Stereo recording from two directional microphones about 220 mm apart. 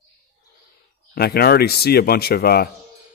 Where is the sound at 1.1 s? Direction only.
45° left (ahead or behind).